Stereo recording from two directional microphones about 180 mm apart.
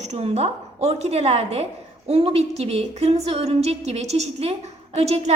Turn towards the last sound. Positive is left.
turn(degrees=-35)  # may be behind; listen again after turning